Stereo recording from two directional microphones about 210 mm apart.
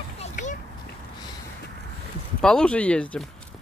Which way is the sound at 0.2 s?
35° left (ahead or behind).